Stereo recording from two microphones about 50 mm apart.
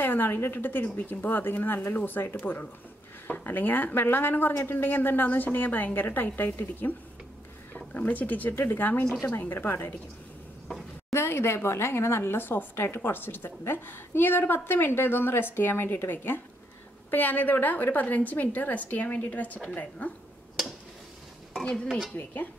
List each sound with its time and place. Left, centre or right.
0.0 s a woman's voice: left
4.6 s a woman's voice: left
4.8 s a woman's voice: left
11.1 s a woman's voice: left
22.1 s a woman's voice: left